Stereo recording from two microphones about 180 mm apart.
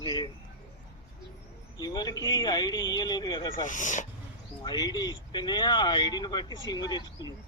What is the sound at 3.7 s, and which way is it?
Speech, 45° left (ahead or behind).